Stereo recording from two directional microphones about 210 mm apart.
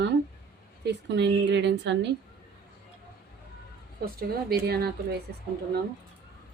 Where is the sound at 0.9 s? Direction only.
55° right (ahead or behind).